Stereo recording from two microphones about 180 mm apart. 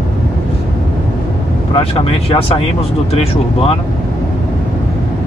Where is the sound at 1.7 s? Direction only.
30° left (ahead or behind).